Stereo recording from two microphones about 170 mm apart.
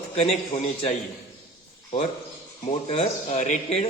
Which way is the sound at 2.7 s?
40° left (ahead or behind).